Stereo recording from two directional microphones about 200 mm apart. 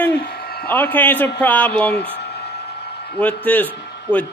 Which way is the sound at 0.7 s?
10° left (ahead or behind).